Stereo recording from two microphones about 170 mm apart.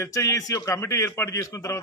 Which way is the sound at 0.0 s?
20° left (ahead or behind).